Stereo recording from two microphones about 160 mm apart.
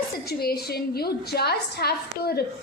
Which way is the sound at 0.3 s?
75° left (ahead or behind).